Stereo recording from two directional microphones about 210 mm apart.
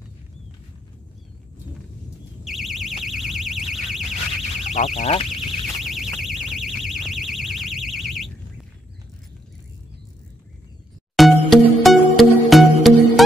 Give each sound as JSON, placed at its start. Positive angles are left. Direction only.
{"t": 2.4, "sound": "alarm", "side_deg": 0}
{"t": 4.7, "sound": "speech", "side_deg": 30}
{"t": 5.8, "sound": "alarm", "side_deg": 0}
{"t": 11.1, "sound": "music", "side_deg": 0}